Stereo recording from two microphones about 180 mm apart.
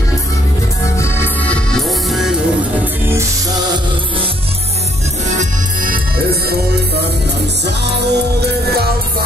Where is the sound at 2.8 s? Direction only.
15° right (ahead or behind).